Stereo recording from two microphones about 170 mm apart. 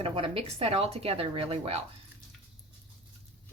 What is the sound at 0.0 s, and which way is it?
Speech, 35° right (ahead or behind).